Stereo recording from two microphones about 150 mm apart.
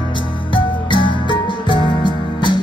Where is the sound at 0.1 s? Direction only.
35° left (ahead or behind).